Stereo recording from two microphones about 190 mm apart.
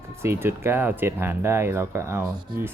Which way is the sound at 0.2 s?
15° right (ahead or behind).